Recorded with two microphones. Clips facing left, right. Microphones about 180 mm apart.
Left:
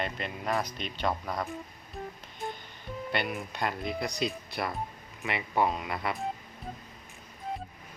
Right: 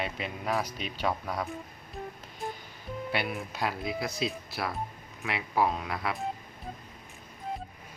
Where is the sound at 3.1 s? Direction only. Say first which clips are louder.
Left 1 dB; 5° right (ahead or behind).